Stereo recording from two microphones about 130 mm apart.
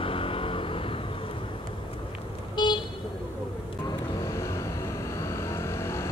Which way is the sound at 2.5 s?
35° left (ahead or behind).